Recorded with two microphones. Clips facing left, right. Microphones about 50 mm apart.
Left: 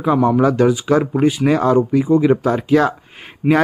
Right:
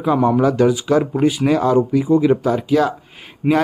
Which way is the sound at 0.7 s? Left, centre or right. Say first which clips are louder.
Left 1 dB; centre.